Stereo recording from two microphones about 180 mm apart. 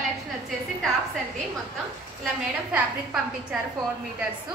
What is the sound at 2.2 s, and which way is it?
Speech, 5° right (ahead or behind).